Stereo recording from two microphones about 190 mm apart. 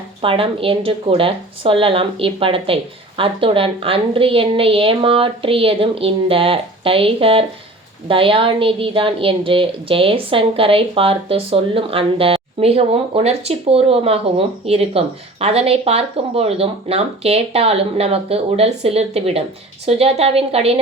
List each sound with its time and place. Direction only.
0.2 s a woman's voice: 30° right (ahead or behind)